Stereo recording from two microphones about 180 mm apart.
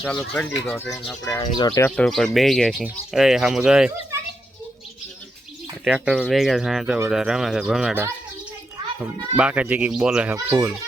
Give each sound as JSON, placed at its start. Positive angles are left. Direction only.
{"t": 0.0, "sound": "speech", "side_deg": 5}
{"t": 1.2, "sound": "speech", "side_deg": 15}
{"t": 2.0, "sound": "speech", "side_deg": 0}
{"t": 5.8, "sound": "a child's voice", "side_deg": -5}
{"t": 10.3, "sound": "a child's voice", "side_deg": -15}